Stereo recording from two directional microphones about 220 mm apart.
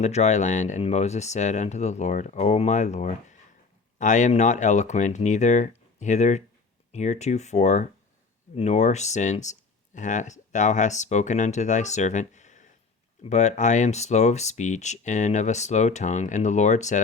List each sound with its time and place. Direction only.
0.0 s speech: 30° left (ahead or behind)